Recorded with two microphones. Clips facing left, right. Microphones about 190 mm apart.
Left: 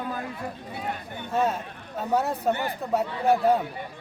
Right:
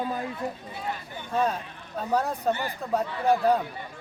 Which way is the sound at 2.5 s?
60° left (ahead or behind).